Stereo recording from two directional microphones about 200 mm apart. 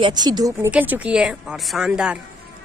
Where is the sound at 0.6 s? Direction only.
5° right (ahead or behind).